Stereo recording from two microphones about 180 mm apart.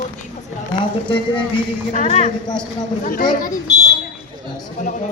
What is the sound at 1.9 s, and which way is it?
A woman's voice, 40° left (ahead or behind).